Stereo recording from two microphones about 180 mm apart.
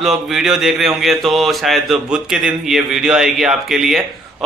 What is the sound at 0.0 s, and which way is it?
Mantra, centre (ahead or behind).